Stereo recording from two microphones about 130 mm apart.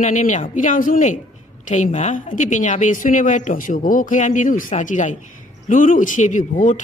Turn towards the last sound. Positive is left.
turn(degrees=75)  # may be behind; listen again after turning